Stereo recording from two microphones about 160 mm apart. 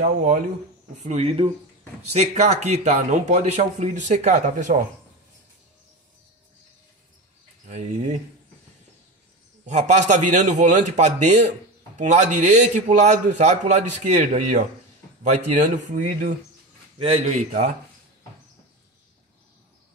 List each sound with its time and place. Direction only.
0.0 s a man's voice: 50° right (ahead or behind)
2.1 s a man's voice: 45° right (ahead or behind)
7.6 s a man's voice: 50° right (ahead or behind)
9.7 s a man's voice: 45° right (ahead or behind)
17.0 s a man's voice: 40° right (ahead or behind)